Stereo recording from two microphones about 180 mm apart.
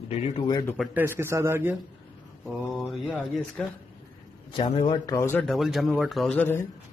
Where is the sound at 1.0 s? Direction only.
15° right (ahead or behind).